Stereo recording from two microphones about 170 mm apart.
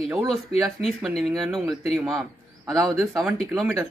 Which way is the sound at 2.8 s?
20° right (ahead or behind).